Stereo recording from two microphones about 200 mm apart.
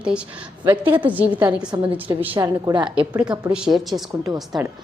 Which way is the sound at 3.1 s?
5° right (ahead or behind).